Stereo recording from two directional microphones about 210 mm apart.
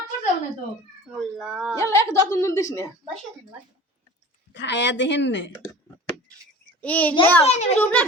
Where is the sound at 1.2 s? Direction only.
Centre (ahead or behind).